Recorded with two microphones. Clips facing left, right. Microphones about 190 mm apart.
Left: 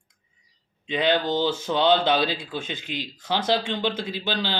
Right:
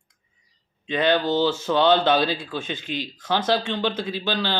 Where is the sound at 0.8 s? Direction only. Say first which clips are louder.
Right 2 dB; 15° left (ahead or behind).